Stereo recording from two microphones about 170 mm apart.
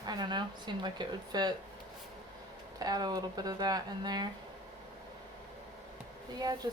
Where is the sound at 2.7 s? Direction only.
20° right (ahead or behind).